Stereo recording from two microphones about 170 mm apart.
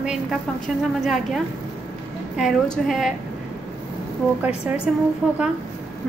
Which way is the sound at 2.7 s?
Centre (ahead or behind).